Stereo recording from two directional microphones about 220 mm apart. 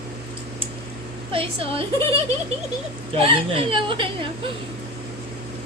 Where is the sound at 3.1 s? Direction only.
25° right (ahead or behind).